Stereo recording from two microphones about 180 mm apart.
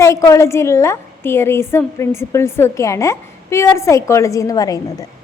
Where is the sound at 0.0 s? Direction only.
15° left (ahead or behind).